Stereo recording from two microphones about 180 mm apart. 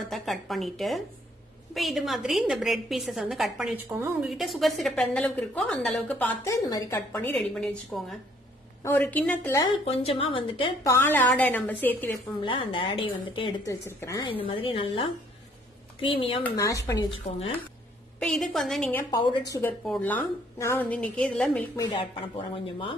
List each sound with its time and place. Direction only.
0.0 s a woman's voice: centre (ahead or behind)
9.8 s speech: 35° left (ahead or behind)
10.9 s a woman's voice: 10° left (ahead or behind)
12.4 s a woman's voice: 30° left (ahead or behind)
13.8 s a woman's voice: 15° left (ahead or behind)
14.4 s a woman's voice: 30° left (ahead or behind)
16.6 s a woman's voice: 15° left (ahead or behind)
17.3 s a woman's voice: 45° left (ahead or behind)
18.2 s a woman's voice: centre (ahead or behind)
19.0 s a woman's voice: 20° left (ahead or behind); by 21.6 s 5° left (ahead or behind)
21.7 s a woman's voice: 25° left (ahead or behind)